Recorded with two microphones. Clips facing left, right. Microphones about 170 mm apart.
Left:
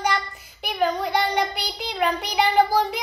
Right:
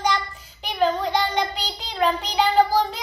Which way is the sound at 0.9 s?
10° left (ahead or behind).